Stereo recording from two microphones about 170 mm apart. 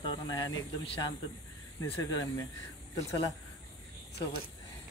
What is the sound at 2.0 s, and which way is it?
Speech, 20° left (ahead or behind).